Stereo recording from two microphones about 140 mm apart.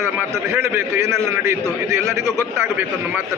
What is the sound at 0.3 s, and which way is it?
A man's voice, 15° right (ahead or behind).